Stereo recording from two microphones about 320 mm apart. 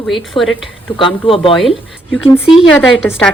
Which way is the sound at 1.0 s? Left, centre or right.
Centre.